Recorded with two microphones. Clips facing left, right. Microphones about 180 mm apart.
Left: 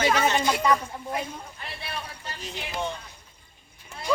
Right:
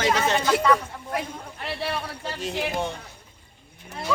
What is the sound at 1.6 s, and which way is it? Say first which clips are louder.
Speech: right 9 dB; 75° right (ahead or behind).